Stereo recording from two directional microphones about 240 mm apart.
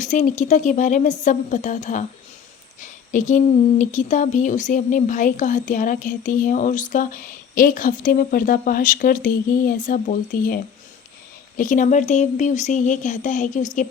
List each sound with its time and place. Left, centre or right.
0.0 s speech: left